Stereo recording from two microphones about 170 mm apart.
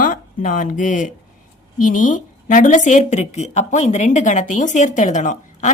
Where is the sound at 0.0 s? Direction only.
50° left (ahead or behind).